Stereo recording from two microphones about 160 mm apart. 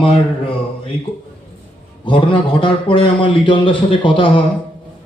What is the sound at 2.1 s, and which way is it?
Speech, 30° left (ahead or behind).